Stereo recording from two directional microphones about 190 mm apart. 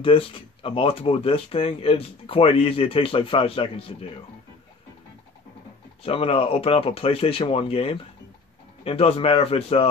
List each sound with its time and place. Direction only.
0.0 s speech: 30° left (ahead or behind)
6.0 s a man's voice: 30° left (ahead or behind)